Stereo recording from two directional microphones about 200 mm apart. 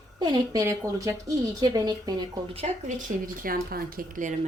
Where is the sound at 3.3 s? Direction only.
45° right (ahead or behind).